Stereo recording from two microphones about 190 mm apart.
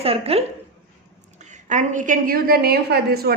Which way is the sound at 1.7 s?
40° right (ahead or behind).